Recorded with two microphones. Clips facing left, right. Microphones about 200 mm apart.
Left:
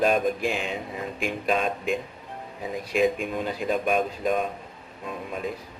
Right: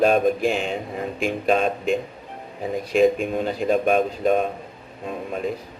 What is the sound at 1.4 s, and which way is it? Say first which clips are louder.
Speech: right 5 dB; 40° right (ahead or behind).